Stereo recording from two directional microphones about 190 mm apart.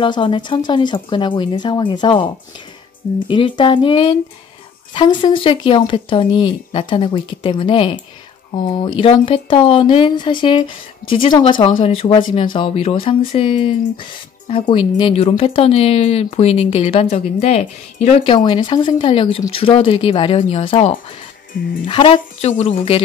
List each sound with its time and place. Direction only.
0.0 s speech: 25° left (ahead or behind)